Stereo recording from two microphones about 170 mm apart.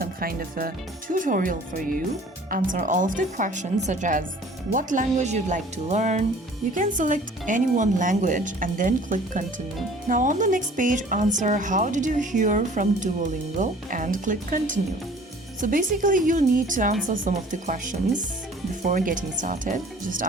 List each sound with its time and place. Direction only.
0.0 s speech: 60° right (ahead or behind)